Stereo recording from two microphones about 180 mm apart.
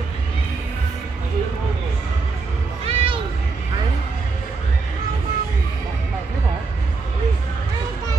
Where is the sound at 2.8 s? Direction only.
30° right (ahead or behind).